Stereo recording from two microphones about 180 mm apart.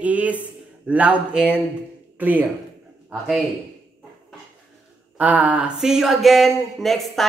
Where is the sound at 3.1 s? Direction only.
Centre (ahead or behind).